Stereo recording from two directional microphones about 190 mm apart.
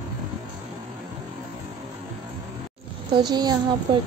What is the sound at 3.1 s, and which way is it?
Speech, 20° right (ahead or behind).